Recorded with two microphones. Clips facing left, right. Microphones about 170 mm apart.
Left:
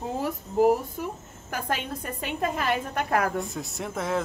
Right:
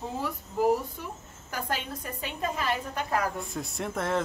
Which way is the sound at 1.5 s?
55° left (ahead or behind).